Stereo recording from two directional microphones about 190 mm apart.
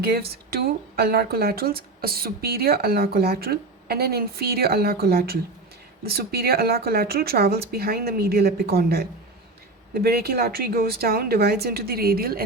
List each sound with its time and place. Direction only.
0.0 s speech: 55° right (ahead or behind)